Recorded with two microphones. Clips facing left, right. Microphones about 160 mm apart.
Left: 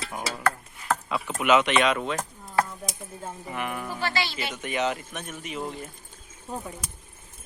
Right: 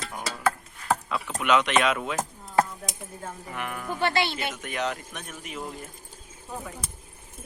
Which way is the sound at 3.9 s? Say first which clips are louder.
Right 6 dB; 55° right (ahead or behind).